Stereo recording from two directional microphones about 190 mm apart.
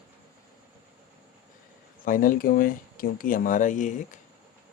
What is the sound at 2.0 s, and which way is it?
Speech, 45° left (ahead or behind).